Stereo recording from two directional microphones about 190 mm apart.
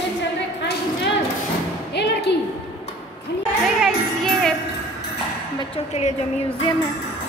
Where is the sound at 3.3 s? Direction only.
60° left (ahead or behind).